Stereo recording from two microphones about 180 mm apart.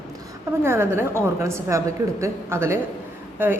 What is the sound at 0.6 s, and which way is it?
A woman's voice, 15° right (ahead or behind).